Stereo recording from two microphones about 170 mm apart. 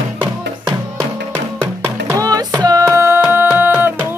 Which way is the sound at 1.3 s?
15° right (ahead or behind).